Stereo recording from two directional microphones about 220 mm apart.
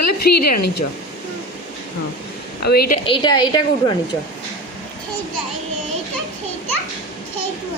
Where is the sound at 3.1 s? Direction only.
20° left (ahead or behind).